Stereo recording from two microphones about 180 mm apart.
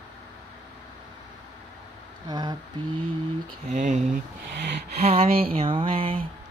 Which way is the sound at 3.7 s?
45° right (ahead or behind).